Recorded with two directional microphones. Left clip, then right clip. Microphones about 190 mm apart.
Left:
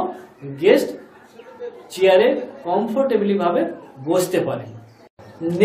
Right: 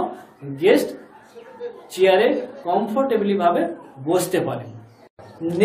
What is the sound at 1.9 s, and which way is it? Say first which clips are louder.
A man's voice: left 2 dB; 15° right (ahead or behind).